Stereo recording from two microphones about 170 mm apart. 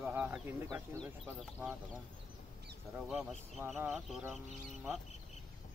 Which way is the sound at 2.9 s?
Centre (ahead or behind).